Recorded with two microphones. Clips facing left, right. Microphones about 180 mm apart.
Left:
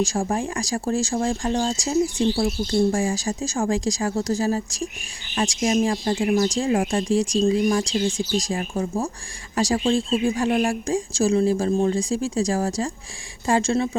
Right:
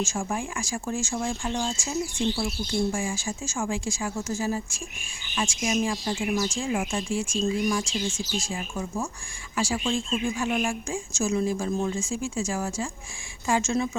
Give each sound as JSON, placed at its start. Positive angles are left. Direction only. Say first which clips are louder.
{"t": 0.0, "sound": "speech", "louder": "left 6 dB", "side_deg": 35}